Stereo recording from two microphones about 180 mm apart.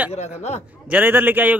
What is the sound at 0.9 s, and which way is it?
Speech, 10° right (ahead or behind).